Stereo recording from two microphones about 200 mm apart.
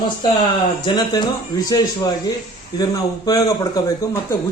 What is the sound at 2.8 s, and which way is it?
A man's voice, 20° left (ahead or behind).